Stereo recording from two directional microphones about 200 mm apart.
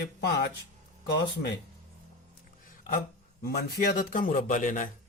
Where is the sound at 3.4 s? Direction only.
50° left (ahead or behind).